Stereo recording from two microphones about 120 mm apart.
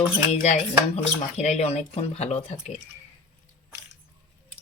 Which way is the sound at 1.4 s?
65° left (ahead or behind).